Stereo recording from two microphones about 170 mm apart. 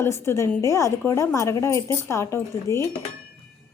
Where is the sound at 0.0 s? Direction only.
15° left (ahead or behind).